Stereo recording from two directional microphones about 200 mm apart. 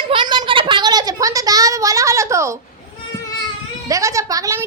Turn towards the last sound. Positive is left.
turn(degrees=-15)  # may be behind; listen again after turning